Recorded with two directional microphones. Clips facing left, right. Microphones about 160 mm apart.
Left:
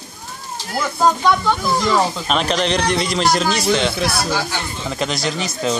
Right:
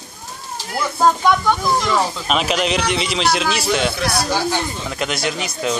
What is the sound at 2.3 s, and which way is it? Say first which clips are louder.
A man's voice: even; 5° right (ahead or behind).